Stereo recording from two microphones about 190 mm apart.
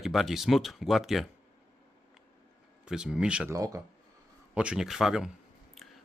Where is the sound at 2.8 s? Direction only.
5° right (ahead or behind).